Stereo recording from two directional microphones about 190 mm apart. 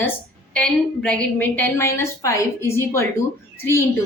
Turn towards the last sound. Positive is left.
turn(degrees=15)  # may be behind; listen again after turning